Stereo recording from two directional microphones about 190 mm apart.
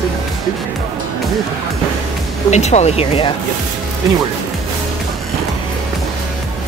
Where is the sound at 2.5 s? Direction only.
35° left (ahead or behind).